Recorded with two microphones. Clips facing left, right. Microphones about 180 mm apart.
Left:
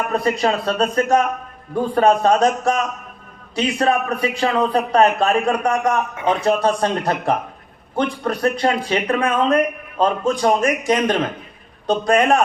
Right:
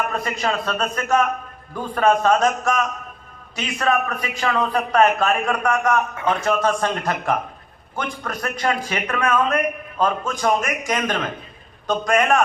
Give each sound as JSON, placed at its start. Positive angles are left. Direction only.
{"t": 0.1, "sound": "a man's voice", "side_deg": 35}